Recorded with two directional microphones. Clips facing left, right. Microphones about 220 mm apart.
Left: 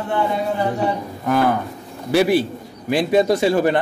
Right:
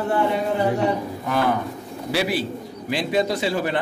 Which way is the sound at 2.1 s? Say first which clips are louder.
Left 7 dB; 50° left (ahead or behind).